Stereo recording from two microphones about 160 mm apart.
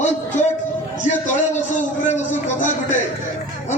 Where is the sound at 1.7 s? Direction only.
50° left (ahead or behind).